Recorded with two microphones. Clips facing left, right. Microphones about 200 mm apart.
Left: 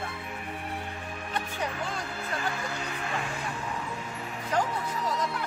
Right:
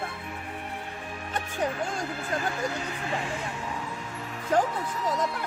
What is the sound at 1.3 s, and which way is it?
Music, 45° right (ahead or behind).